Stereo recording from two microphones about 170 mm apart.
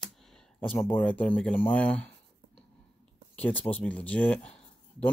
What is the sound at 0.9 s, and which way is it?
Speech, 10° left (ahead or behind).